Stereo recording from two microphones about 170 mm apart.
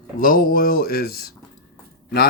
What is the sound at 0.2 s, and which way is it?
Speech, 55° left (ahead or behind).